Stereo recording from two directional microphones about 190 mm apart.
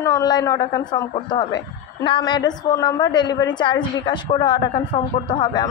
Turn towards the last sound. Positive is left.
turn(degrees=20)  # may be behind; listen again after turning